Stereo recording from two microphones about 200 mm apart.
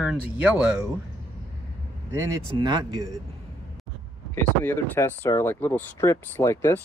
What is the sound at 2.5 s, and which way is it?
Speech, 20° right (ahead or behind).